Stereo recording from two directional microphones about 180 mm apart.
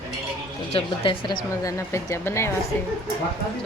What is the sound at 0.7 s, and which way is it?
Speech, 30° left (ahead or behind).